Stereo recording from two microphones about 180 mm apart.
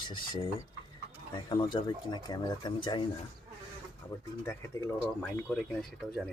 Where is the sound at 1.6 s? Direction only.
25° left (ahead or behind).